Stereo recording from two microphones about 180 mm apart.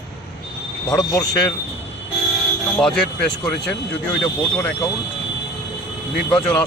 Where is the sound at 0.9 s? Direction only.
20° left (ahead or behind).